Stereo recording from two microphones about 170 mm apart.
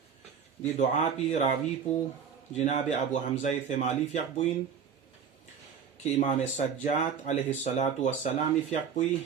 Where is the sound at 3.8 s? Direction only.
45° left (ahead or behind).